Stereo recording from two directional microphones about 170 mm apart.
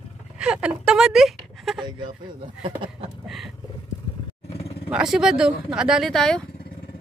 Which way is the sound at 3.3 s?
Centre (ahead or behind).